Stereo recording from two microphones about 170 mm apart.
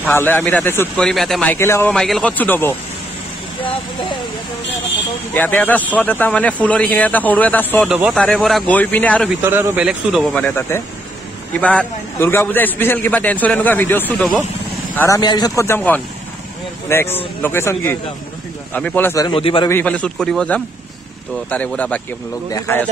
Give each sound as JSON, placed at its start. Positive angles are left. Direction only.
{"t": 0.0, "sound": "a man's voice", "side_deg": 10}
{"t": 5.3, "sound": "a man's voice", "side_deg": 10}
{"t": 7.9, "sound": "speech", "side_deg": -5}
{"t": 8.2, "sound": "a man's voice", "side_deg": 5}
{"t": 9.4, "sound": "speech", "side_deg": -15}
{"t": 10.3, "sound": "a man's voice", "side_deg": 10}
{"t": 15.0, "sound": "a man's voice", "side_deg": 20}
{"t": 19.2, "sound": "a man's voice", "side_deg": 30}
{"t": 19.7, "sound": "a man's voice", "side_deg": 10}